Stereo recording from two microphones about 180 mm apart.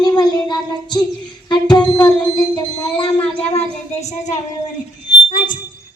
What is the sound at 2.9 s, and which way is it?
Speech, 30° left (ahead or behind).